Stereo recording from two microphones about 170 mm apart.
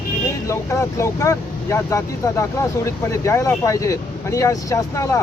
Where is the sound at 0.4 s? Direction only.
15° left (ahead or behind).